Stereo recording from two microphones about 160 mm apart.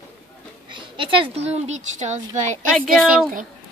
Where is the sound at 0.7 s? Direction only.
30° right (ahead or behind).